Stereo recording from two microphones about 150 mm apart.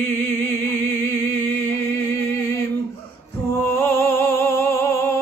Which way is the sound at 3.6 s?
15° left (ahead or behind).